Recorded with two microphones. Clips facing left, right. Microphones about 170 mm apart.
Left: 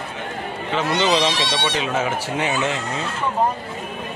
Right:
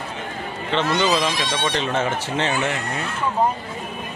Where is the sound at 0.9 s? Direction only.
30° left (ahead or behind).